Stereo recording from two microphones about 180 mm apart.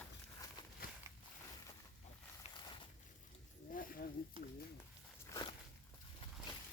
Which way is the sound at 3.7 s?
55° left (ahead or behind).